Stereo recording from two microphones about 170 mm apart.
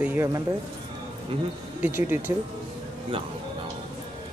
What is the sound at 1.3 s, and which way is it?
Speech, 30° right (ahead or behind).